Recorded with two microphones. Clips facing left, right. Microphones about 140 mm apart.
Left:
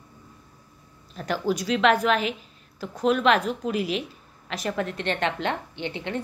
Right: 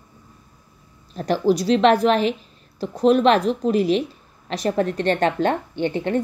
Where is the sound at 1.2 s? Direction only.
40° right (ahead or behind).